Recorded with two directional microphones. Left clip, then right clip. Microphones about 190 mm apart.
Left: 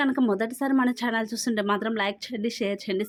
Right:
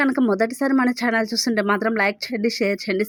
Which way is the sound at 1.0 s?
5° right (ahead or behind).